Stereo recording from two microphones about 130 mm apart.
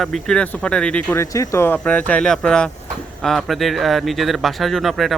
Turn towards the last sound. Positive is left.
turn(degrees=0)  # may be behind; listen again after turning